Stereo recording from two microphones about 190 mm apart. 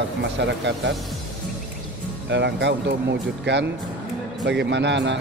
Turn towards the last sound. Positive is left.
turn(degrees=-70)  # may be behind; listen again after turning